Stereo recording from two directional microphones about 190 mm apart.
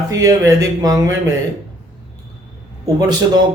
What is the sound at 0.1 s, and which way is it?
Speech, 15° right (ahead or behind).